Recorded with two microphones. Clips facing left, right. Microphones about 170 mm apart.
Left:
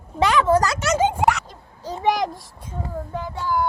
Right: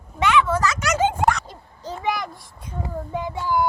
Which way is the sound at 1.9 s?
35° left (ahead or behind).